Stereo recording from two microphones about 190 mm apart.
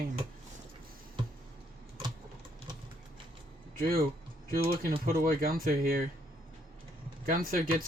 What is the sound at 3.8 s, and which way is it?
Speech, 50° right (ahead or behind).